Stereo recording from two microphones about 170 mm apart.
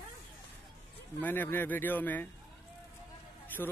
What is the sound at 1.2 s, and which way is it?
Speech, 10° left (ahead or behind).